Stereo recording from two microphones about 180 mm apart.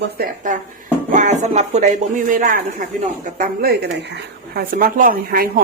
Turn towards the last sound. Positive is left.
turn(degrees=-55)  # may be behind; listen again after turning